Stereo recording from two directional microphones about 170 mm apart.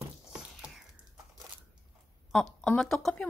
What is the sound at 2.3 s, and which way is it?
Speech, 5° left (ahead or behind).